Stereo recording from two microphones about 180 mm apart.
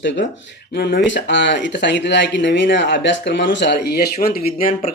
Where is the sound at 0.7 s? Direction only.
55° left (ahead or behind).